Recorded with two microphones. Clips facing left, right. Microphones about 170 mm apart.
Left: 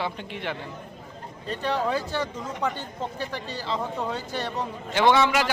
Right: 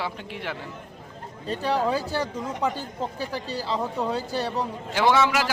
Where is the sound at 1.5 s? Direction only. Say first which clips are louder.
Right 2 dB; 35° right (ahead or behind).